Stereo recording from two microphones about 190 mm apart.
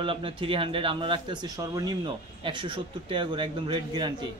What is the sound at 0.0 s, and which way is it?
Speech, 30° right (ahead or behind).